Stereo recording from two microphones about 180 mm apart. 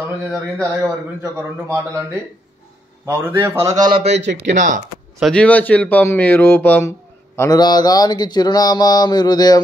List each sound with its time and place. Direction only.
0.0 s a man's voice: 5° right (ahead or behind)
3.1 s a man's voice: 10° right (ahead or behind)
3.6 s a man's voice: 25° right (ahead or behind)
4.1 s speech: 70° right (ahead or behind)
4.5 s speech: 45° right (ahead or behind)
5.2 s speech: 5° left (ahead or behind)
7.3 s a sound: 20° left (ahead or behind)